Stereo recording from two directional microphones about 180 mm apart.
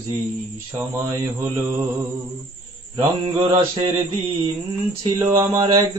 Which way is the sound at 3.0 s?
25° right (ahead or behind).